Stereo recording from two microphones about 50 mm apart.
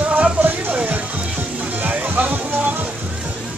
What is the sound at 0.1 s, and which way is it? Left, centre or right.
Music, right.